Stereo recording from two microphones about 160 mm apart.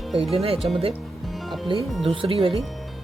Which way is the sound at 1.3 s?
Centre (ahead or behind).